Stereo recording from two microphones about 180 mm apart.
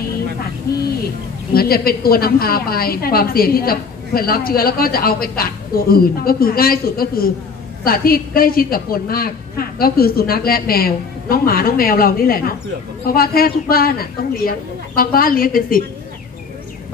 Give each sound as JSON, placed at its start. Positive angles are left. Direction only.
{"t": 1.5, "sound": "a woman's voice", "side_deg": 55}